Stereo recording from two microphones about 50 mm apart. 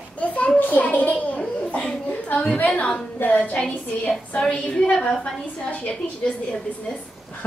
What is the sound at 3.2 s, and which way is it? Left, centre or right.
Speech, left.